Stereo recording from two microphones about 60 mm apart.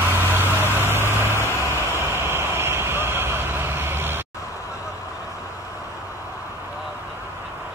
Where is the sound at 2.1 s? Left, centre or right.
Right.